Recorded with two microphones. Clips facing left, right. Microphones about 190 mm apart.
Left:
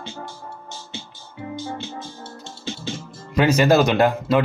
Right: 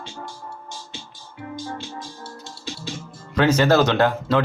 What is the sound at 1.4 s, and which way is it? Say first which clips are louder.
Music: left 2 dB; 20° left (ahead or behind).